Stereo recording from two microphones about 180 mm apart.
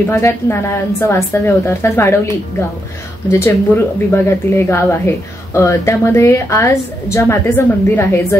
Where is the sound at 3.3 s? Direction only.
15° left (ahead or behind).